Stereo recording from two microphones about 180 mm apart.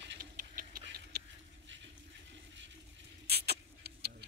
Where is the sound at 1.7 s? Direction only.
90° right.